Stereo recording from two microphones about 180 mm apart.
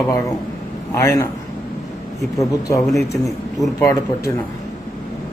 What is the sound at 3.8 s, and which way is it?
Speech, 15° left (ahead or behind).